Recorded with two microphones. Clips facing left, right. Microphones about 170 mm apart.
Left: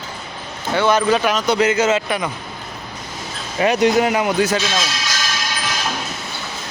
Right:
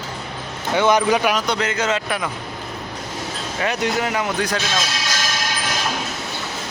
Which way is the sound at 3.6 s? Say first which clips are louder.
Left 7 dB; 20° left (ahead or behind).